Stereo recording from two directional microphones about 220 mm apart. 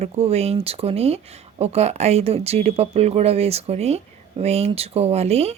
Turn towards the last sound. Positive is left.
turn(degrees=-30)  # may be behind; listen again after turning